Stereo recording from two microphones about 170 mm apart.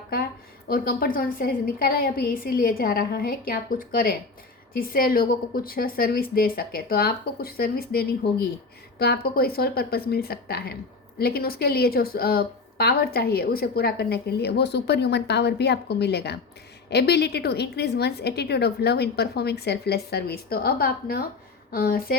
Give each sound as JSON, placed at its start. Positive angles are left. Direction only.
{"t": 0.7, "sound": "a woman's voice", "side_deg": 60}